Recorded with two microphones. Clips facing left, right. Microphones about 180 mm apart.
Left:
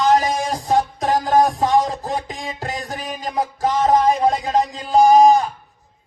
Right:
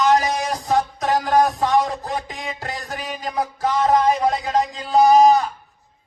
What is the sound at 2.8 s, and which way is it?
Music, 45° left (ahead or behind).